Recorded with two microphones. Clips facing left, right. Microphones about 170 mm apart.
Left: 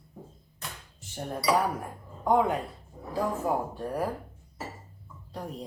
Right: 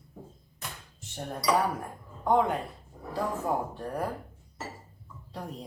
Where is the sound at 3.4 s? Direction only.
10° left (ahead or behind).